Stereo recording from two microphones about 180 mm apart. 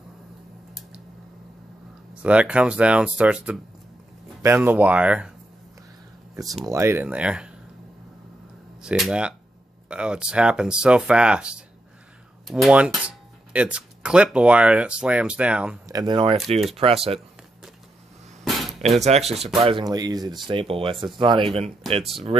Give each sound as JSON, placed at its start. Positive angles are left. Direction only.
{"t": 2.2, "sound": "speech", "side_deg": -5}
{"t": 6.6, "sound": "speech", "side_deg": -15}
{"t": 8.8, "sound": "speech", "side_deg": -5}
{"t": 15.9, "sound": "speech", "side_deg": -25}
{"t": 18.4, "sound": "a sound", "side_deg": 0}
{"t": 18.8, "sound": "speech", "side_deg": -40}
{"t": 19.6, "sound": "speech", "side_deg": -25}